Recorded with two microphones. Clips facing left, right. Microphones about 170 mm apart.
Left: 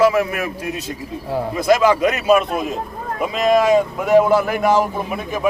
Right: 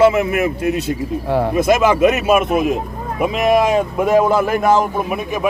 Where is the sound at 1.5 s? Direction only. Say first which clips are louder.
Left 1 dB; 20° right (ahead or behind).